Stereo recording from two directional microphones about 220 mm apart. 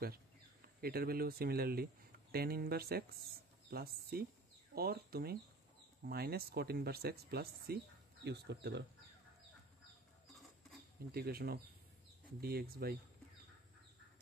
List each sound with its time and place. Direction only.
0.7 s speech: 45° right (ahead or behind)
10.3 s rodents: centre (ahead or behind)
11.1 s speech: 45° right (ahead or behind)